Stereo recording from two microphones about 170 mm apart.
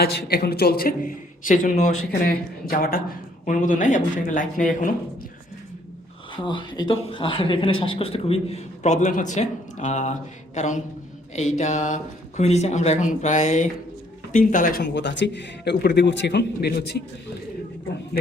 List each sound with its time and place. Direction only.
0.0 s a man's voice: 65° left (ahead or behind); by 4.9 s 50° left (ahead or behind)
6.3 s a man's voice: 30° left (ahead or behind); by 17.0 s 75° left (ahead or behind)